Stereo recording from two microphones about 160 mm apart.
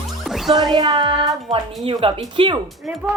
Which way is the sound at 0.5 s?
25° right (ahead or behind).